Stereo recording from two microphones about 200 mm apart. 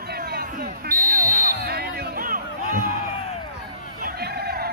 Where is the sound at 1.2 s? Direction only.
45° right (ahead or behind).